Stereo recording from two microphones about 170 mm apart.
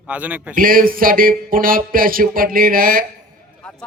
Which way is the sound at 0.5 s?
55° right (ahead or behind).